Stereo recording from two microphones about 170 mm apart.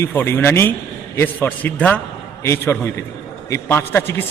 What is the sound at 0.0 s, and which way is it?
A man's voice, 10° left (ahead or behind).